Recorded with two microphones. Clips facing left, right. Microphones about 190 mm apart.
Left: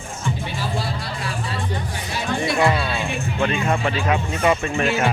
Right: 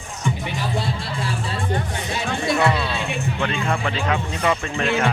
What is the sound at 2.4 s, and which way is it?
Music, 10° left (ahead or behind).